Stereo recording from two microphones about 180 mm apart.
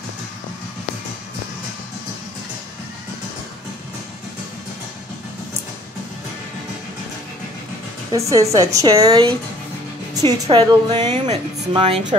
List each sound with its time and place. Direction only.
8.1 s a woman's voice: 15° right (ahead or behind)
10.3 s a woman's voice: 20° right (ahead or behind)